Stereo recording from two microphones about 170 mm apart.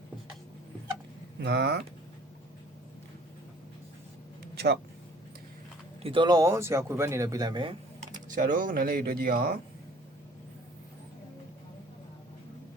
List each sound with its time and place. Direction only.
1.4 s speech: 80° right
4.5 s speech: 70° right (ahead or behind)
6.0 s speech: 30° right (ahead or behind)
8.4 s speech: 60° right (ahead or behind)